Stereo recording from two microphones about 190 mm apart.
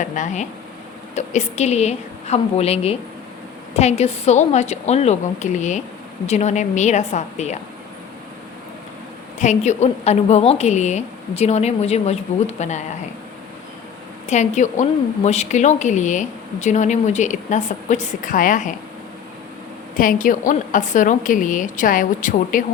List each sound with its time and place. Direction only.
0.0 s a woman's voice: 40° left (ahead or behind)
9.4 s a woman's voice: 40° left (ahead or behind)
14.3 s a woman's voice: 40° left (ahead or behind)
20.0 s a woman's voice: 45° left (ahead or behind)